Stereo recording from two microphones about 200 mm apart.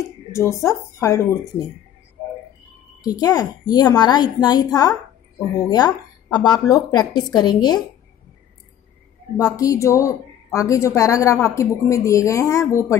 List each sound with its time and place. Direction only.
0.3 s speech: 15° left (ahead or behind)
3.0 s a woman's voice: 20° left (ahead or behind)
9.4 s speech: 15° left (ahead or behind)